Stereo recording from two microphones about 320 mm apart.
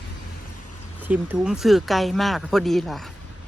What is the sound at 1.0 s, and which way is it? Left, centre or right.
Speech, centre.